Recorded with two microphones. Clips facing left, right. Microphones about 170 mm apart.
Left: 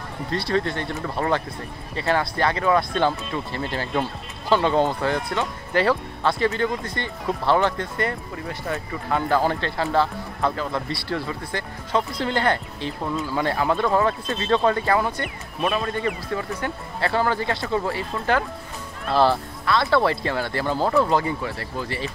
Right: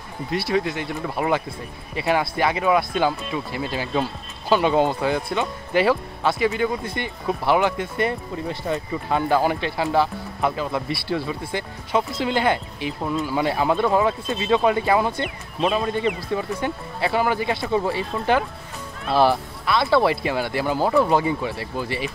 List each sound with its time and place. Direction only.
0.3 s speech: 5° right (ahead or behind)